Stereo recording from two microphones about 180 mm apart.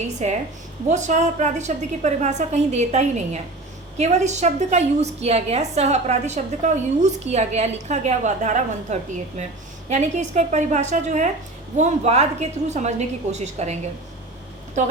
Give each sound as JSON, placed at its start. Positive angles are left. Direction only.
{"t": 0.2, "sound": "a woman's voice", "side_deg": -40}